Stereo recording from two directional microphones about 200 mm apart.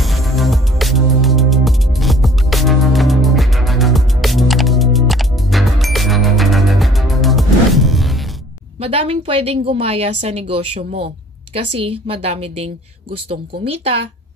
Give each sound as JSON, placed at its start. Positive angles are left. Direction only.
{"t": 0.0, "sound": "music", "side_deg": 0}
{"t": 8.8, "sound": "a woman's voice", "side_deg": -30}